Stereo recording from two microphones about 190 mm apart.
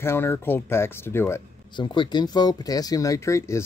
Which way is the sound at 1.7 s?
25° left (ahead or behind).